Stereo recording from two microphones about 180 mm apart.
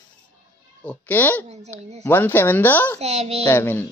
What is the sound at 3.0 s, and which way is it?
Speech, 35° right (ahead or behind).